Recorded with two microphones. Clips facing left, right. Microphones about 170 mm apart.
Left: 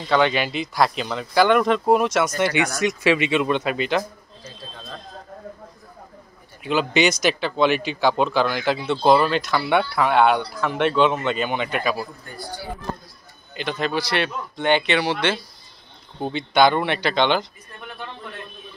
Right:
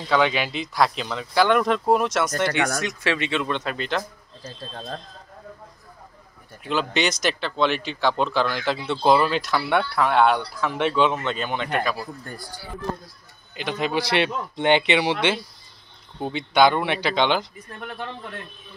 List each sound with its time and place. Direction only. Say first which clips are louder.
0.1 s speech: left 2 dB; centre (ahead or behind)
6.6 s speech: left 4 dB; 5° left (ahead or behind)
13.6 s speech: left 1 dB; 10° right (ahead or behind)
14.1 s speech: right 2 dB; 20° right (ahead or behind)
16.2 s speech: left 1 dB; 5° right (ahead or behind)